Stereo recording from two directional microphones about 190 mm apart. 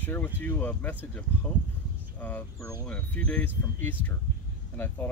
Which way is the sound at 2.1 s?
10° left (ahead or behind).